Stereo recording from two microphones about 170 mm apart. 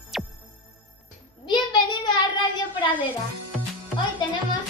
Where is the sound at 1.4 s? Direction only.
25° left (ahead or behind).